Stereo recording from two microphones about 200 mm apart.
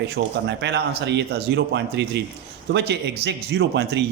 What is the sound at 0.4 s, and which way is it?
A man's voice, 60° right (ahead or behind).